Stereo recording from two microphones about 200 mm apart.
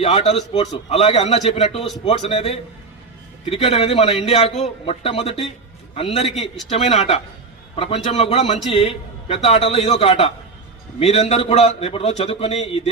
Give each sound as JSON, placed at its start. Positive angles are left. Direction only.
{"t": 0.0, "sound": "a man's voice", "side_deg": 30}